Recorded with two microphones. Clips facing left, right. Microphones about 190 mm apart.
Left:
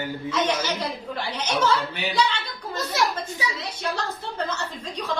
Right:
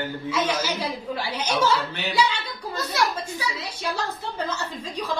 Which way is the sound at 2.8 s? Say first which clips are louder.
Even; 20° left (ahead or behind).